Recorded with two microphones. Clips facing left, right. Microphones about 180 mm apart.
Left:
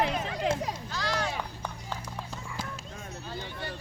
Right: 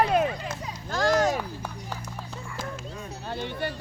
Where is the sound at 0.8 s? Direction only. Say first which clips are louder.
Right 13 dB; 45° right (ahead or behind).